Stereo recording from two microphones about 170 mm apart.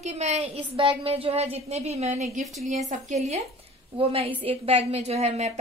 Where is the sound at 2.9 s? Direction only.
45° right (ahead or behind).